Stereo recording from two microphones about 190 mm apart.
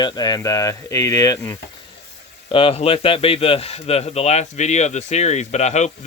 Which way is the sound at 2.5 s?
30° left (ahead or behind).